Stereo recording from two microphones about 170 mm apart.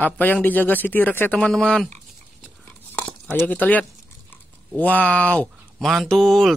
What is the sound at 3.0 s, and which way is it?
Speech, 10° left (ahead or behind).